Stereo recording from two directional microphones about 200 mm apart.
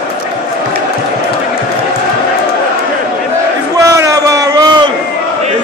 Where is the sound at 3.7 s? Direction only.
15° right (ahead or behind).